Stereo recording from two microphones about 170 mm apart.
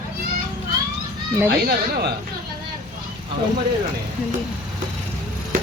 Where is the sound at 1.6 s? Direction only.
65° right (ahead or behind).